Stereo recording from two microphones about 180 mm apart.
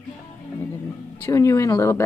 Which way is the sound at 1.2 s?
15° left (ahead or behind).